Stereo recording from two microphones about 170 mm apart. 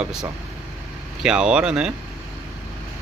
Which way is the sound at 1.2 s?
5° right (ahead or behind).